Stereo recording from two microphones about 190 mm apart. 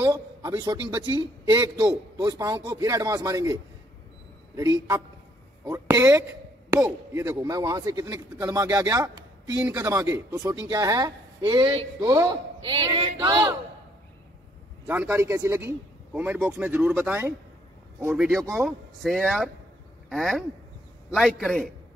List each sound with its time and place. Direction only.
0.0 s a man's voice: 20° right (ahead or behind)
4.6 s speech: 20° right (ahead or behind)
14.9 s speech: 10° right (ahead or behind)